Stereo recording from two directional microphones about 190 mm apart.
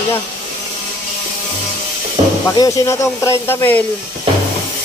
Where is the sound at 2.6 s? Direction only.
15° left (ahead or behind).